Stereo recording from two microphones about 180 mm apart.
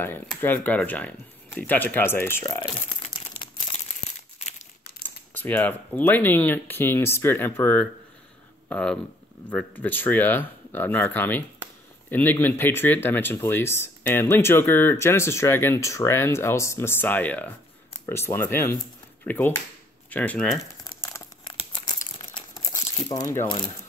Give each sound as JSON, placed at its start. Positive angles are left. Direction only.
{"t": 0.4, "sound": "speech", "side_deg": 10}
{"t": 5.3, "sound": "speech", "side_deg": 10}
{"t": 21.1, "sound": "crumpling", "side_deg": 25}